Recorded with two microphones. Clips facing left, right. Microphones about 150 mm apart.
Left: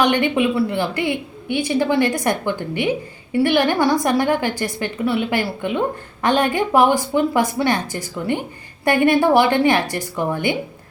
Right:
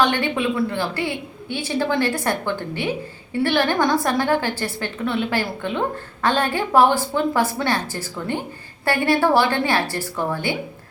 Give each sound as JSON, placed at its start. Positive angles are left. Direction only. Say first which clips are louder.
{"t": 0.0, "sound": "a woman's voice", "louder": "left 3 dB", "side_deg": 15}